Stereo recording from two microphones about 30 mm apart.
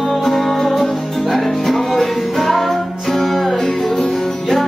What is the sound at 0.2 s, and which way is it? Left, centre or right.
Music, centre.